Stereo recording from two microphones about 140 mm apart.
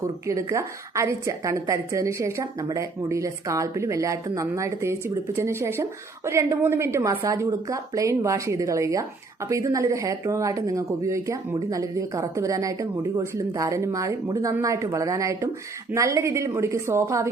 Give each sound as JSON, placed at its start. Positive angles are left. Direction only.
{"t": 0.3, "sound": "a woman's voice", "side_deg": -20}